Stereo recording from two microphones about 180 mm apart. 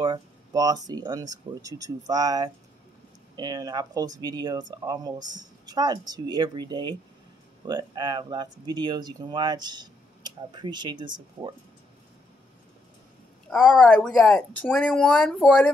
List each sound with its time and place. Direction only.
0.0 s speech: 20° right (ahead or behind)
13.5 s speech: 5° left (ahead or behind)